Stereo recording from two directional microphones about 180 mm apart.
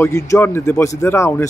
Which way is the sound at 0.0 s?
15° left (ahead or behind).